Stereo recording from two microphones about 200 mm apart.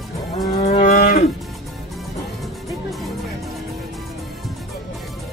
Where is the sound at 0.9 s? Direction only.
50° left (ahead or behind).